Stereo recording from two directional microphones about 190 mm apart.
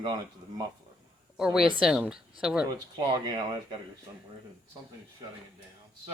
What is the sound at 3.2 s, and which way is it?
Speech, 25° right (ahead or behind).